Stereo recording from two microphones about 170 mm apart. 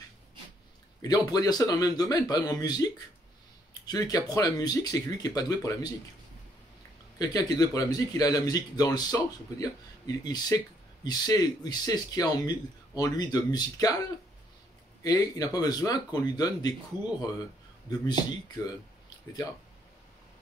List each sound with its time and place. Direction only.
1.0 s speech: 20° left (ahead or behind)
7.2 s speech: 20° left (ahead or behind)
15.0 s speech: 20° left (ahead or behind)
17.8 s speech: 25° left (ahead or behind)